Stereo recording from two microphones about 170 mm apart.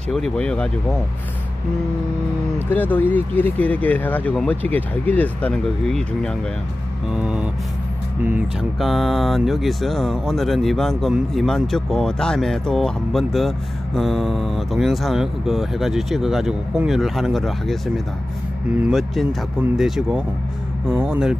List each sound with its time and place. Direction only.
0.1 s speech: 5° left (ahead or behind)
2.7 s speech: 10° left (ahead or behind)
7.1 s speech: 5° right (ahead or behind)
20.9 s speech: 10° right (ahead or behind)